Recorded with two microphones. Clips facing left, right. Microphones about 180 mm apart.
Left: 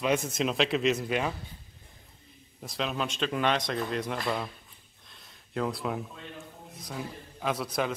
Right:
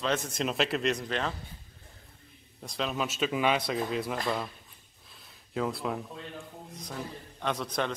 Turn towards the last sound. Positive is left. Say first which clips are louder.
# left 1 dB
turn(degrees=5)  # may be behind; listen again after turning